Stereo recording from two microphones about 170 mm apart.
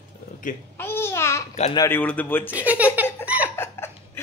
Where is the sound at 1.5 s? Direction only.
40° left (ahead or behind).